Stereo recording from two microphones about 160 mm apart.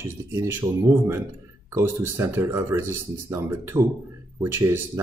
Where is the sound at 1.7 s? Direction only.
15° right (ahead or behind).